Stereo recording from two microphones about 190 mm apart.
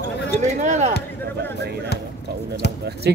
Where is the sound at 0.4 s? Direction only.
40° right (ahead or behind).